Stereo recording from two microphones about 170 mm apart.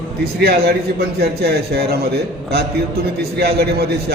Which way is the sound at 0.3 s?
70° right (ahead or behind).